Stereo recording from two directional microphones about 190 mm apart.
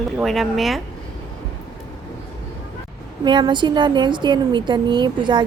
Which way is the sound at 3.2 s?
25° right (ahead or behind).